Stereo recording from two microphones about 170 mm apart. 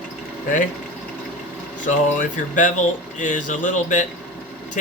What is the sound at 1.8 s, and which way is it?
Speech, 50° left (ahead or behind).